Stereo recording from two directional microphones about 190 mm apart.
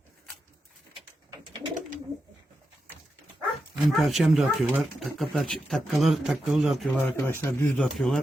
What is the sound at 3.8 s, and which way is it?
Speech, centre (ahead or behind).